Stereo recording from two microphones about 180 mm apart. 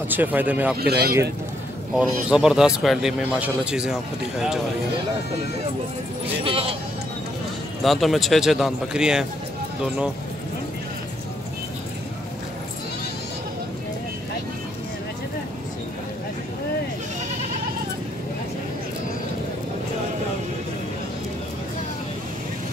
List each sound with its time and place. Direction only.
0.1 s speech: 10° right (ahead or behind)
0.7 s speech: 60° right (ahead or behind)
2.0 s speech: 5° right (ahead or behind)
6.4 s speech: 30° right (ahead or behind)
7.8 s speech: centre (ahead or behind)